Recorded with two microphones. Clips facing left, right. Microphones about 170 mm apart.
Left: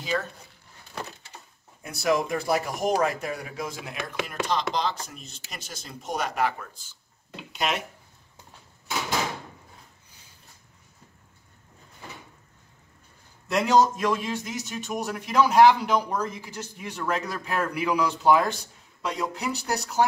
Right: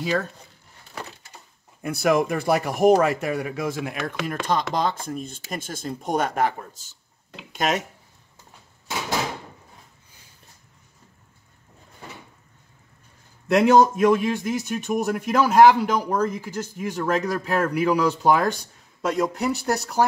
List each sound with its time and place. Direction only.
1.8 s a man's voice: 55° right (ahead or behind)
13.5 s a man's voice: 55° right (ahead or behind)